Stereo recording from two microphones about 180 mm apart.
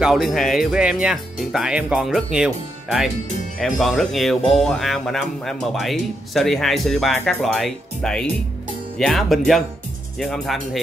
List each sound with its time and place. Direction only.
0.0 s speech: centre (ahead or behind)